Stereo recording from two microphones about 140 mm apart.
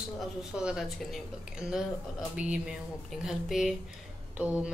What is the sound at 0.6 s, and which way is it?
Speech, 5° right (ahead or behind).